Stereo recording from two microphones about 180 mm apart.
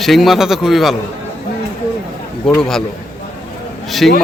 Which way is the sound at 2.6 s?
Centre (ahead or behind).